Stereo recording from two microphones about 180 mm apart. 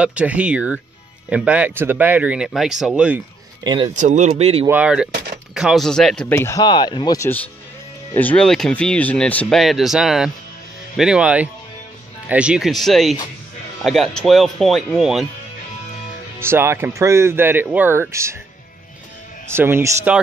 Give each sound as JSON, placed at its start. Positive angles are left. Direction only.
{"t": 0.0, "sound": "speech", "side_deg": -5}
{"t": 3.6, "sound": "speech", "side_deg": -25}
{"t": 4.0, "sound": "speech", "side_deg": -40}
{"t": 4.6, "sound": "speech", "side_deg": -5}
{"t": 6.6, "sound": "speech", "side_deg": 25}
{"t": 16.3, "sound": "speech", "side_deg": -15}
{"t": 19.5, "sound": "speech", "side_deg": -15}